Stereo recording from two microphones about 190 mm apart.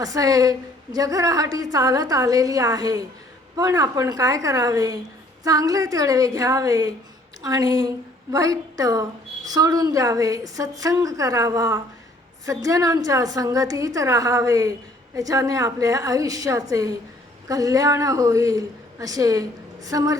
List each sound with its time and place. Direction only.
0.0 s a woman's voice: 20° right (ahead or behind)